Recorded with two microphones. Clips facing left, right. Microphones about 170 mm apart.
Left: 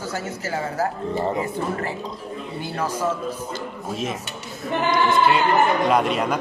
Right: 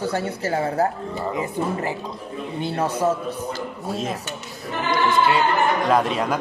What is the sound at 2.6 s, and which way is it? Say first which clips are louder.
Speech: right 4 dB; 30° right (ahead or behind).